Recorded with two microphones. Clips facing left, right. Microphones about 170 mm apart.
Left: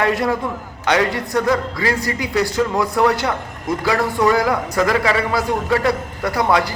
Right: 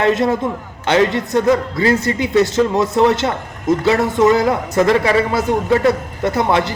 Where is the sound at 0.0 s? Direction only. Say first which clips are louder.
Right 3 dB; 25° right (ahead or behind).